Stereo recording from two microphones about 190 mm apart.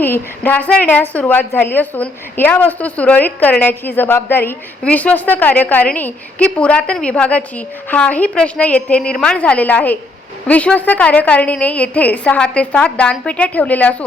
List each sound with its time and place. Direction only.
0.0 s a woman's voice: 10° left (ahead or behind)